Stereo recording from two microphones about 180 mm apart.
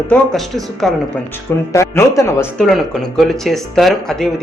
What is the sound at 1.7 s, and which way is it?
Speech, 15° left (ahead or behind).